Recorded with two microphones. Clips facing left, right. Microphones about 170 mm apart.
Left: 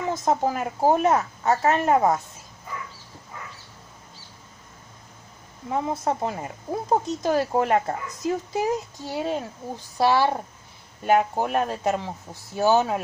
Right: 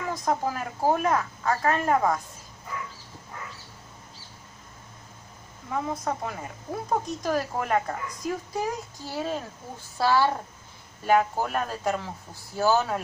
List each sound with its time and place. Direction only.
0.1 s speech: 25° left (ahead or behind)
5.7 s speech: 30° left (ahead or behind)
9.1 s speech: 20° left (ahead or behind)